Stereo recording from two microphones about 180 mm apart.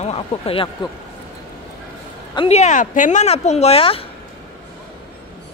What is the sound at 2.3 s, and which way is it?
Speech, 35° left (ahead or behind).